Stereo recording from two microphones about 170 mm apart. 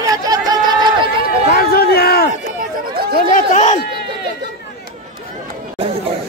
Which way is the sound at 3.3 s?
45° left (ahead or behind).